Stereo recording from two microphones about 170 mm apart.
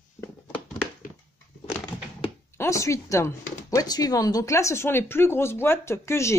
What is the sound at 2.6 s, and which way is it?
Speech, 15° left (ahead or behind).